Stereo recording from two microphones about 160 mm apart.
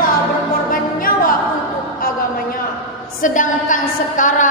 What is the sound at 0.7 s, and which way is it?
Music, 60° left (ahead or behind).